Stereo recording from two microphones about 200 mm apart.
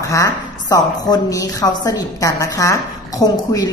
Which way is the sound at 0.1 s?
15° left (ahead or behind).